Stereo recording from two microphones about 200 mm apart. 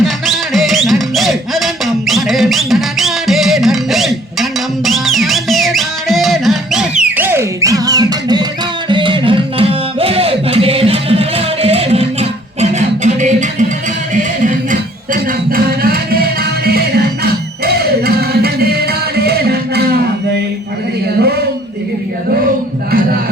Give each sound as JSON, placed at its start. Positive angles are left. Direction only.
{"t": 0.0, "sound": "music", "side_deg": 0}